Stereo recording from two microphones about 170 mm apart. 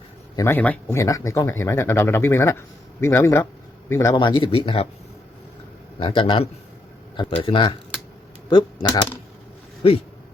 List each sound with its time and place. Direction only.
0.3 s speech: 15° left (ahead or behind)
4.2 s speech: 30° left (ahead or behind)
6.0 s speech: 30° left (ahead or behind)